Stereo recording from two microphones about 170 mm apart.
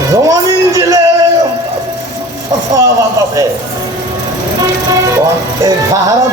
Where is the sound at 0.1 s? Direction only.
20° right (ahead or behind).